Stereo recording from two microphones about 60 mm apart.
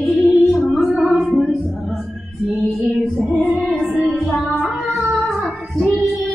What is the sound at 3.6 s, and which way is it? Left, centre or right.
Music, centre.